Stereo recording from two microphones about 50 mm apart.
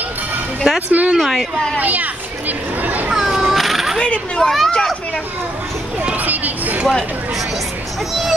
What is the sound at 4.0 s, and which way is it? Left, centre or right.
Children playing, centre.